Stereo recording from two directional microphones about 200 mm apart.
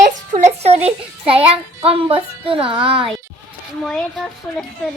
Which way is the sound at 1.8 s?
30° right (ahead or behind).